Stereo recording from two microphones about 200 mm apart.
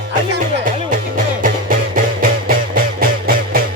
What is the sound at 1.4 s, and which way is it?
Music, 45° right (ahead or behind).